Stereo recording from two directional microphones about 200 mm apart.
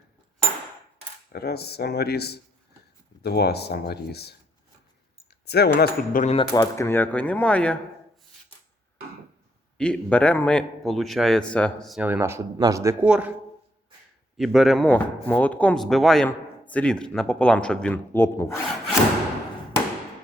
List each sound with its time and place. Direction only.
1.3 s speech: 50° left (ahead or behind)
5.5 s speech: 55° left (ahead or behind)
6.2 s speech: 30° left (ahead or behind)
6.6 s speech: 15° left (ahead or behind)
9.7 s speech: 5° left (ahead or behind)
14.3 s speech: centre (ahead or behind)